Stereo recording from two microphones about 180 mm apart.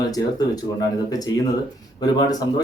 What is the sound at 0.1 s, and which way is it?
Speech, 20° left (ahead or behind).